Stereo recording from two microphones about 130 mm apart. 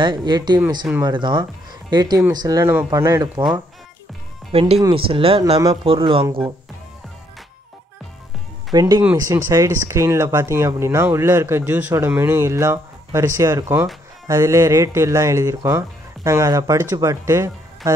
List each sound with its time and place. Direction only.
0.0 s speech: 35° right (ahead or behind)
4.5 s speech: 50° right (ahead or behind)
8.7 s speech: 30° right (ahead or behind)